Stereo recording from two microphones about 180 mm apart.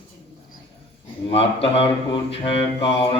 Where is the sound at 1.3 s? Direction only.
35° left (ahead or behind).